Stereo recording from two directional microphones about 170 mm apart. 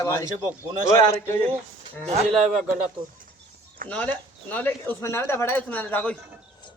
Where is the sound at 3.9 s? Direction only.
10° left (ahead or behind).